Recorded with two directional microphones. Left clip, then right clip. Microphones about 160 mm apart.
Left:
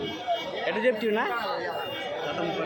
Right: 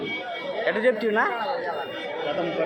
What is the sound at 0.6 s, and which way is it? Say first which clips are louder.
Speech: right 3 dB; 10° left (ahead or behind).